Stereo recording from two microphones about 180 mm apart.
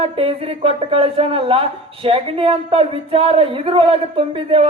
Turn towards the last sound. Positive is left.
turn(degrees=-30)  # may be behind; listen again after turning